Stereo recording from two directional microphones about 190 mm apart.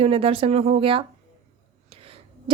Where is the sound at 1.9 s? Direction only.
30° right (ahead or behind).